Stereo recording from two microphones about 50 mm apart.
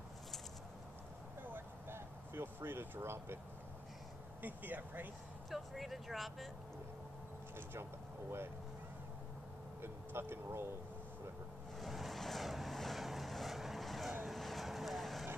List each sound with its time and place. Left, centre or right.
1.4 s a sound: right
4.4 s speech: right
5.5 s speech: centre
9.8 s speech: right
11.8 s vehicle: centre